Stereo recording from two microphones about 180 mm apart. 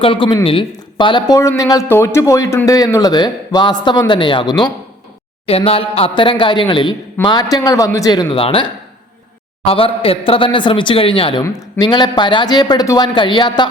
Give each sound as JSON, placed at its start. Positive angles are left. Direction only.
{"t": 0.0, "sound": "speech", "side_deg": 30}
{"t": 9.6, "sound": "speech", "side_deg": 30}